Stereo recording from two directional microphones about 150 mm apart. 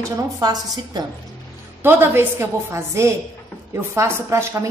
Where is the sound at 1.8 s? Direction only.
15° right (ahead or behind).